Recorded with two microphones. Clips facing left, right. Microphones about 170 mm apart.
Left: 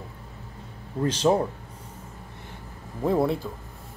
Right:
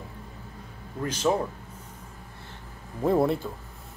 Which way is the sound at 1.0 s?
30° left (ahead or behind).